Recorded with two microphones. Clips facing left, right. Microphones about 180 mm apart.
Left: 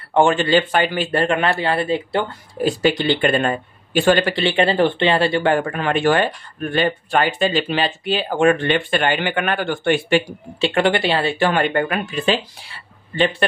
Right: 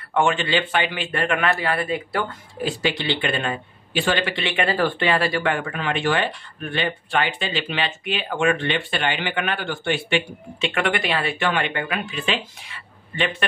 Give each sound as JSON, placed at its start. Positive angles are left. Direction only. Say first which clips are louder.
{"t": 0.1, "sound": "a man's voice", "louder": "left 5 dB", "side_deg": 35}
{"t": 2.6, "sound": "a man's voice", "louder": "left 6 dB", "side_deg": 45}